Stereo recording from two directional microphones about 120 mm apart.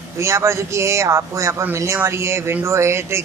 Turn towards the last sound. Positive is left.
turn(degrees=-20)  # may be behind; listen again after turning